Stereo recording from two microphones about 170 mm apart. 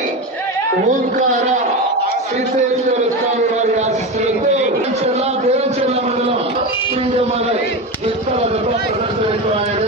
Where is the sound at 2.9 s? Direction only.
40° right (ahead or behind).